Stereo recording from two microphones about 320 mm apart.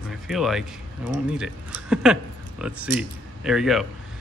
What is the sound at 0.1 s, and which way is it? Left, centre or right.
Speech, centre.